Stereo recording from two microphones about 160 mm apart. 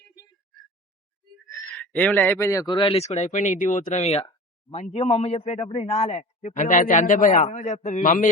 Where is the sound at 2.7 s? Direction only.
35° left (ahead or behind); by 7.4 s 55° left (ahead or behind).